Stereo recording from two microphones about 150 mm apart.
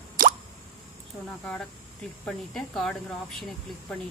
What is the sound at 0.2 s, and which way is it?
Plop, 65° right (ahead or behind).